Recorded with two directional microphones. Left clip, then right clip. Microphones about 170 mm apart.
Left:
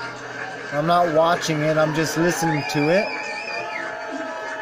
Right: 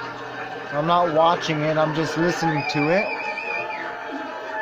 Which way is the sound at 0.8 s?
30° left (ahead or behind).